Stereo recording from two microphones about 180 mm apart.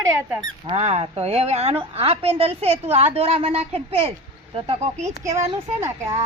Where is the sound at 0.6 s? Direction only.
35° right (ahead or behind).